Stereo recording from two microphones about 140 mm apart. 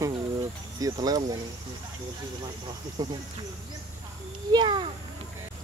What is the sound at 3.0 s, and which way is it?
Speech, 25° right (ahead or behind).